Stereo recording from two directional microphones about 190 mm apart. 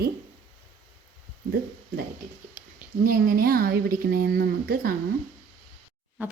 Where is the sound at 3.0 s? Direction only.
50° right (ahead or behind).